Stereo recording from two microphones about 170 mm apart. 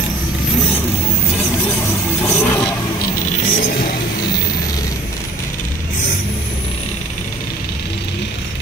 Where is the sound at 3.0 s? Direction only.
45° left (ahead or behind).